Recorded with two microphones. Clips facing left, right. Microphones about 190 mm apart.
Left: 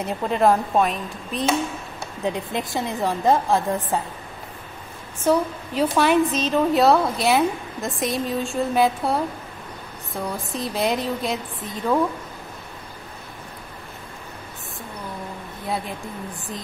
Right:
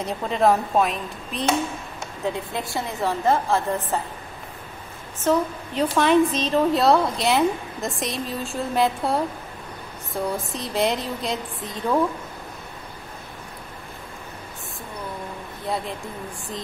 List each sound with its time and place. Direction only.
0.0 s a woman's voice: centre (ahead or behind)
2.2 s a woman's voice: 20° left (ahead or behind)
5.2 s a woman's voice: 10° left (ahead or behind)